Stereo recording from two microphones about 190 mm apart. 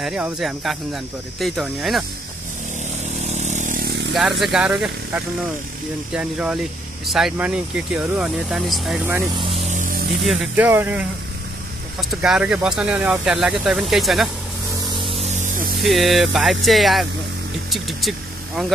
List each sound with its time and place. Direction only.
0.0 s speech: 5° right (ahead or behind)
3.2 s vehicle: 35° right (ahead or behind)
4.1 s speech: centre (ahead or behind)
9.4 s vehicle: 30° right (ahead or behind)
9.8 s a sound: 45° right (ahead or behind)
10.2 s speech: 5° right (ahead or behind)
15.0 s spray: 30° right (ahead or behind)
15.8 s speech: centre (ahead or behind)